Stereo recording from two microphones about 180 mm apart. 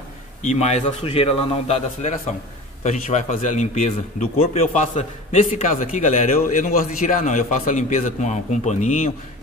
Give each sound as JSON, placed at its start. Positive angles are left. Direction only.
{"t": 0.4, "sound": "a man's voice", "side_deg": 40}